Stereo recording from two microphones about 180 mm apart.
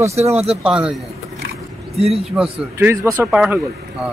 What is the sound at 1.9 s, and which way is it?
Speech, 35° right (ahead or behind).